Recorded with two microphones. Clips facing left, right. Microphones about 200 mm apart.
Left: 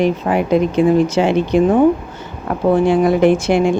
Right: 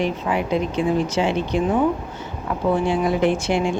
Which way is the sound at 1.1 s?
90° left.